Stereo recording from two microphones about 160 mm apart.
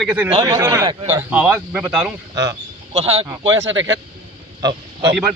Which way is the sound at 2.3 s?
25° right (ahead or behind).